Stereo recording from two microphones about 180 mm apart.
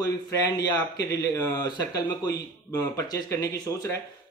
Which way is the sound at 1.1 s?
20° left (ahead or behind).